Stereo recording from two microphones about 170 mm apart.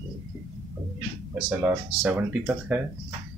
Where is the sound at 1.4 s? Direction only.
10° right (ahead or behind).